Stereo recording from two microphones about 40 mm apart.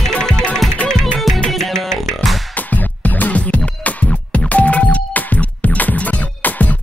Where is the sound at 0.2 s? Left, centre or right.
Centre.